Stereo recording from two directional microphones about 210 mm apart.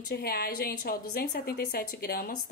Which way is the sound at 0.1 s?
45° left (ahead or behind).